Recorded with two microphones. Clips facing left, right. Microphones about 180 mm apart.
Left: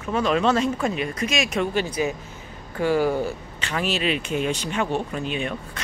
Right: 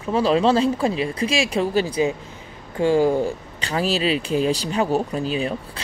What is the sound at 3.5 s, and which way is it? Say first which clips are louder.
Speech: right 4 dB; 35° right (ahead or behind).